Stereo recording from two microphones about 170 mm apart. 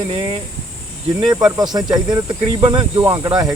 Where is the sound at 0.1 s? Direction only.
30° right (ahead or behind).